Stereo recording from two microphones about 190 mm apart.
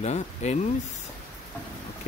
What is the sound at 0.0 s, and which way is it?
Speech, 35° left (ahead or behind).